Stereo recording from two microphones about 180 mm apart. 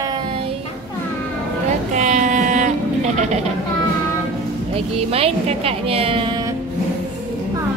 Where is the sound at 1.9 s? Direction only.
40° right (ahead or behind).